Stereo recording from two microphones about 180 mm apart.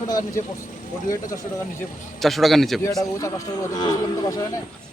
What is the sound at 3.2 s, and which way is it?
Speech, 20° left (ahead or behind).